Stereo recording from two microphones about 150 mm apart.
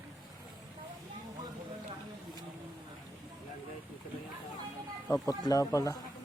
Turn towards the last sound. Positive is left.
turn(degrees=20)  # may be behind; listen again after turning